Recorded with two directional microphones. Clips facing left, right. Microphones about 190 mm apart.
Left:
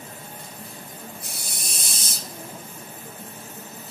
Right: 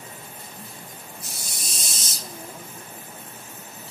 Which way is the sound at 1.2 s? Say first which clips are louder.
Left 1 dB; 60° left (ahead or behind).